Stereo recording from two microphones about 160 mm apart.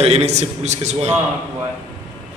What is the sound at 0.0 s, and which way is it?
A man's voice, 40° right (ahead or behind).